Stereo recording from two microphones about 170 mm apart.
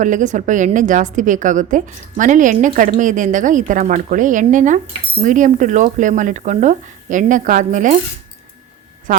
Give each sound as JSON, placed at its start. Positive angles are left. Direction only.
{"t": 0.0, "sound": "a woman's voice", "side_deg": -45}